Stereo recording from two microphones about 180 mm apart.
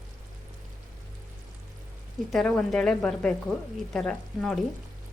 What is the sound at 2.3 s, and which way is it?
Speech, 5° left (ahead or behind).